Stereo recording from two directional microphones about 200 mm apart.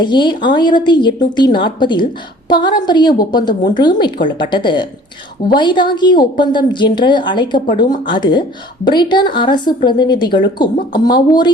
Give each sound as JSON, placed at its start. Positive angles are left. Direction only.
{"t": 0.0, "sound": "speech", "side_deg": 20}